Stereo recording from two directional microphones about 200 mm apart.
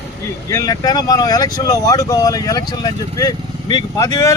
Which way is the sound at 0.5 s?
15° left (ahead or behind).